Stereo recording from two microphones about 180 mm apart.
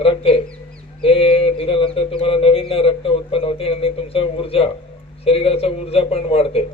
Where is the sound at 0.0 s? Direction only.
30° left (ahead or behind).